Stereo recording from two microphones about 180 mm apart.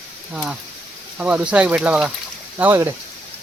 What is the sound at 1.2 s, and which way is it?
Speech, 5° right (ahead or behind).